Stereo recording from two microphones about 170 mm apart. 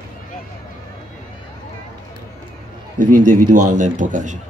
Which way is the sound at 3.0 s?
50° right (ahead or behind).